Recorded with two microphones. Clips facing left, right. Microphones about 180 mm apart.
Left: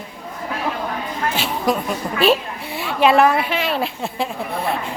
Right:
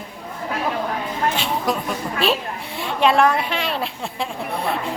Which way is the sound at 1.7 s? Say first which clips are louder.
Left 3 dB; centre (ahead or behind).